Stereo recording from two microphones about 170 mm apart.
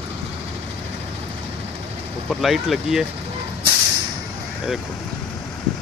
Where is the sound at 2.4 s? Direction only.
Centre (ahead or behind).